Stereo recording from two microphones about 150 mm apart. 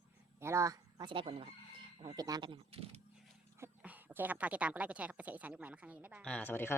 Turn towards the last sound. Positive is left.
turn(degrees=15)  # may be behind; listen again after turning